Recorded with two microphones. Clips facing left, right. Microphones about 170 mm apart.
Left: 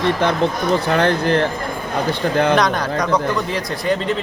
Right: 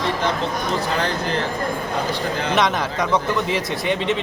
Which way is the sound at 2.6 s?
5° right (ahead or behind).